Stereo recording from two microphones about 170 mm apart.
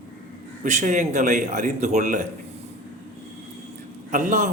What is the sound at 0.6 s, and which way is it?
A man's voice, 45° right (ahead or behind).